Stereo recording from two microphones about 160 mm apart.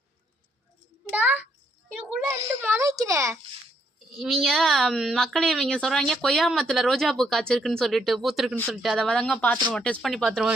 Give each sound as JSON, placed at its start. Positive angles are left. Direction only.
{"t": 1.1, "sound": "a sound", "side_deg": -10}
{"t": 2.2, "sound": "a child's voice", "side_deg": -15}
{"t": 4.1, "sound": "speech", "side_deg": 0}